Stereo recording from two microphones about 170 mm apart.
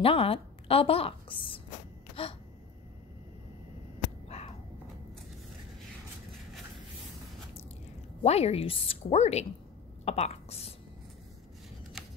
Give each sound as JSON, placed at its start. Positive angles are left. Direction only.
{"t": 0.0, "sound": "a woman's voice", "side_deg": 35}
{"t": 2.2, "sound": "gasp", "side_deg": 35}
{"t": 8.2, "sound": "a woman's voice", "side_deg": 40}